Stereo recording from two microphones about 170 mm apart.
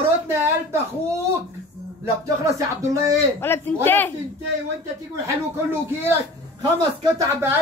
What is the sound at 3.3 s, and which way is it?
Speech, 15° left (ahead or behind).